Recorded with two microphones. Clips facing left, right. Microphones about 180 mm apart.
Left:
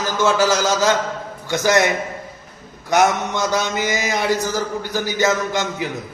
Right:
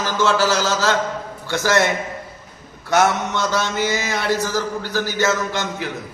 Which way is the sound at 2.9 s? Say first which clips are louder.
Left 1 dB; 15° left (ahead or behind).